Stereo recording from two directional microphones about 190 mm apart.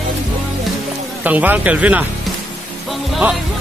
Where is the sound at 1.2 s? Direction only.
10° right (ahead or behind).